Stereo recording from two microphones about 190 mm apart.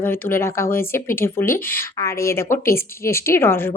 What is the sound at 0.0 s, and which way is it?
Speech, 10° left (ahead or behind).